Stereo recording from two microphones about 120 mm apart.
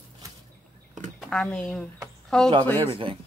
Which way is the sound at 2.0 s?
5° left (ahead or behind).